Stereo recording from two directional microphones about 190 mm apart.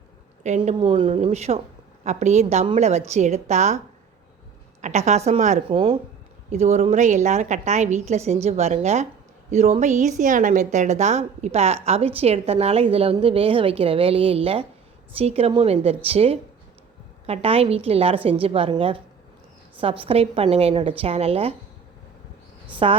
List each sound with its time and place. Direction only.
0.4 s a woman's voice: 40° right (ahead or behind)
0.8 s a woman's voice: 25° right (ahead or behind)
4.8 s a woman's voice: 35° right (ahead or behind)
22.7 s cricket: 30° right (ahead or behind)